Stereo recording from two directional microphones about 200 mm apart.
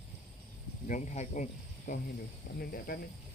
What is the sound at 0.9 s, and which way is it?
Speech, 35° left (ahead or behind).